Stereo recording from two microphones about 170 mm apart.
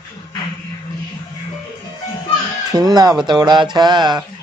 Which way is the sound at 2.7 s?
25° right (ahead or behind).